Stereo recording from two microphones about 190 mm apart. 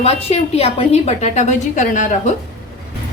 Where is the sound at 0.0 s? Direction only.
35° left (ahead or behind).